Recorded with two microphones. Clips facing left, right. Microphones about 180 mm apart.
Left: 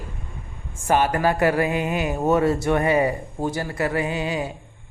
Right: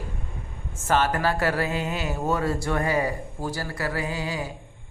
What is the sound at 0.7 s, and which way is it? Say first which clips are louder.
Speech: left 3 dB; 15° left (ahead or behind).